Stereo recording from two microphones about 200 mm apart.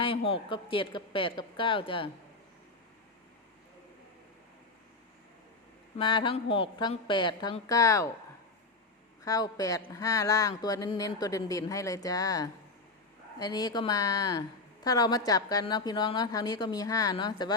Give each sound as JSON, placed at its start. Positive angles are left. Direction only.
{"t": 0.0, "sound": "a woman's voice", "side_deg": 25}
{"t": 6.0, "sound": "a woman's voice", "side_deg": 25}
{"t": 9.2, "sound": "a woman's voice", "side_deg": 15}